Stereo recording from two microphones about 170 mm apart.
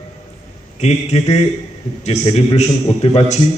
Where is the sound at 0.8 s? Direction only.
40° left (ahead or behind).